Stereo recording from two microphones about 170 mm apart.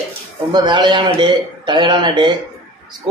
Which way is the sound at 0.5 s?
25° right (ahead or behind).